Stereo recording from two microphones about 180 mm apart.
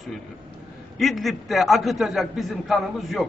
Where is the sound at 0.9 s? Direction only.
Centre (ahead or behind).